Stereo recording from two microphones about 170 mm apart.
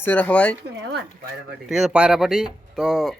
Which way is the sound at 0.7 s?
90° right.